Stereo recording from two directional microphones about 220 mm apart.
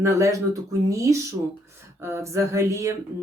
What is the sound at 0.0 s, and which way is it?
Speech, 15° right (ahead or behind).